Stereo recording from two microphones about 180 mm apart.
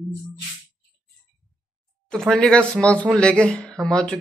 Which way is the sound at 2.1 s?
5° left (ahead or behind).